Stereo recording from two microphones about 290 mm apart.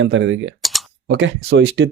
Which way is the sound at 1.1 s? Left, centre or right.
Right.